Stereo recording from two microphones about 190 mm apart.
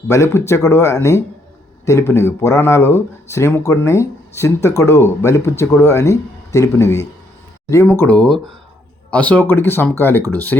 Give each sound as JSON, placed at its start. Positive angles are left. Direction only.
{"t": 0.1, "sound": "speech", "side_deg": 15}